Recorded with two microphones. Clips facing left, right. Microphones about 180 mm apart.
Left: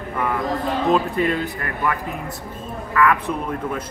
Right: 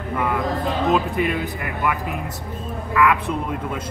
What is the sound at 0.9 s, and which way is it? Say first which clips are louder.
A woman's voice: left 1 dB; 15° right (ahead or behind).